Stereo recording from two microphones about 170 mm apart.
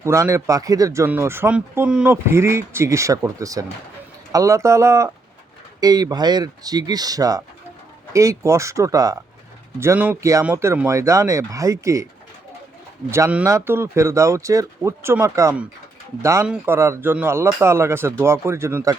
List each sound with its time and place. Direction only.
0.0 s speech: 15° right (ahead or behind)
13.1 s speech: 15° right (ahead or behind)